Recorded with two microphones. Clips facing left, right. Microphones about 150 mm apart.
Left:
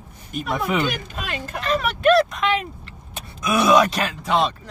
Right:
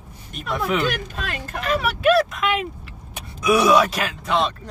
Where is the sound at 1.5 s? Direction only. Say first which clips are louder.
Even; 5° right (ahead or behind).